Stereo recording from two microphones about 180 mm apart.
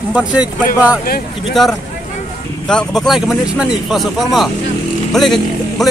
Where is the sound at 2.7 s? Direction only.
5° left (ahead or behind).